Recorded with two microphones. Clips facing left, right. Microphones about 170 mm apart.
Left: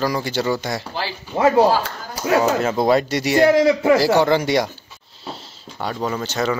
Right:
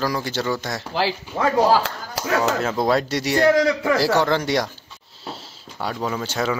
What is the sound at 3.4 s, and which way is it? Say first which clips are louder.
Speech: left 3 dB; 25° left (ahead or behind).